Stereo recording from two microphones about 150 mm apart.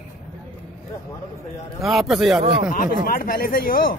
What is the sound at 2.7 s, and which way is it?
Speech, 70° left (ahead or behind).